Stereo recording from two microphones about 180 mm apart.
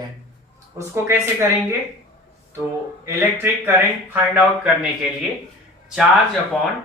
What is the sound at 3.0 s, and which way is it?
Speech, 15° right (ahead or behind).